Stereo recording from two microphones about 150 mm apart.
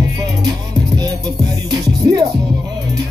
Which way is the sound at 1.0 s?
25° right (ahead or behind).